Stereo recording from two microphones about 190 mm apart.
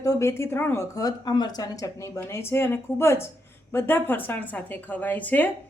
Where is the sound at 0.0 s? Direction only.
15° left (ahead or behind).